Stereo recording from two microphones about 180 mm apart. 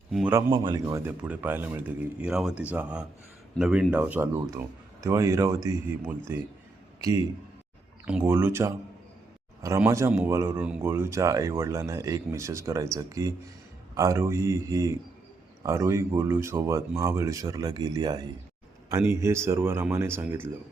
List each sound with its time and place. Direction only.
0.5 s speech: 25° right (ahead or behind)
8.2 s speech: 15° right (ahead or behind)